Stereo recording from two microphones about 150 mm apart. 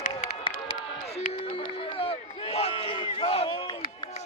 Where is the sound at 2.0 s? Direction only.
40° left (ahead or behind).